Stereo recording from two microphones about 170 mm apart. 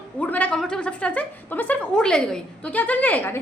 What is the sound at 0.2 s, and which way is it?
A woman's voice, 10° left (ahead or behind).